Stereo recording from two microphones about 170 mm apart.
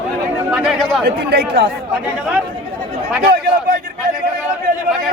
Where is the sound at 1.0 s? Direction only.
60° right (ahead or behind).